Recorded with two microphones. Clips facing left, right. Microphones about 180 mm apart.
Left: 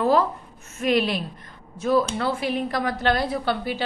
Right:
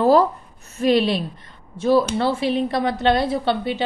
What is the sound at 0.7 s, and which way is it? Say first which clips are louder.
A woman's voice: right 4 dB; 30° right (ahead or behind).